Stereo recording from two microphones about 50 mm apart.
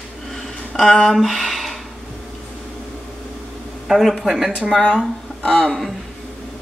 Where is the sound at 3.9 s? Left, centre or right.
Centre.